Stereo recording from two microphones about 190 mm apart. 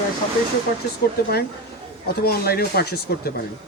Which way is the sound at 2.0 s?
55° left (ahead or behind).